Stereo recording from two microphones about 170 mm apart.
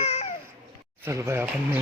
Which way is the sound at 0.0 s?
45° left (ahead or behind).